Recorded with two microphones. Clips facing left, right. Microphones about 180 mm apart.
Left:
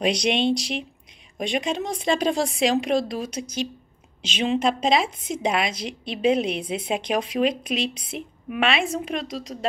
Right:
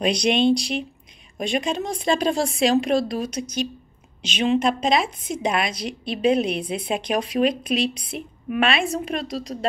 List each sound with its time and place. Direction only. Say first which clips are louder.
0.0 s a woman's voice: right 2 dB; 20° left (ahead or behind)
9.5 s speech: right 3 dB; 5° right (ahead or behind)